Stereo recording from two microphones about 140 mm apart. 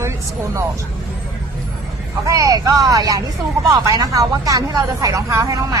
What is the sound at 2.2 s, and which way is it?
A woman's voice, 25° right (ahead or behind).